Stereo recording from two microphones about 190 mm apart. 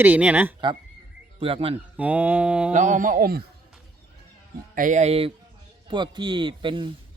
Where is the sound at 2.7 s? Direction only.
40° right (ahead or behind).